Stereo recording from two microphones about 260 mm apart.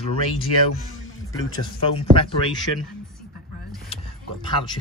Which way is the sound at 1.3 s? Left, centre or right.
Centre.